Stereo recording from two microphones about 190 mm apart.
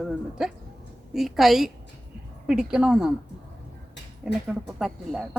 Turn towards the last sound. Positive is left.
turn(degrees=0)  # may be behind; listen again after turning